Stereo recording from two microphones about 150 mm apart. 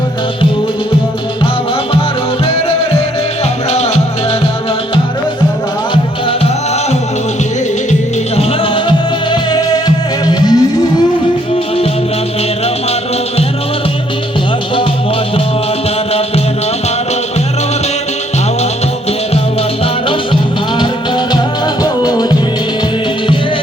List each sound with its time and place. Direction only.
3.7 s music: 45° left (ahead or behind)
8.4 s music: 35° left (ahead or behind)
20.1 s music: 35° left (ahead or behind)
22.0 s music: 25° left (ahead or behind)